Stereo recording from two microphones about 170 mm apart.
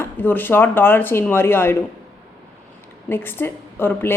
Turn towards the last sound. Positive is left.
turn(degrees=15)  # may be behind; listen again after turning